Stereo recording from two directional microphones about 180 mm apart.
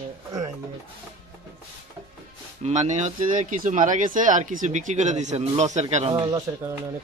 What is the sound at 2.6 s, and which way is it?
Speech, 40° right (ahead or behind).